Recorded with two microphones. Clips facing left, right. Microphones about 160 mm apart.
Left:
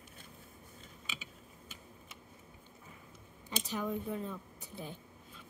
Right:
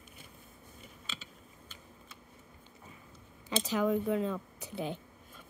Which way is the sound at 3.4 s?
90° right.